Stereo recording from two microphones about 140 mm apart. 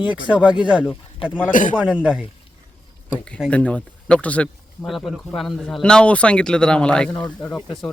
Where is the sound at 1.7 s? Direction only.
5° right (ahead or behind).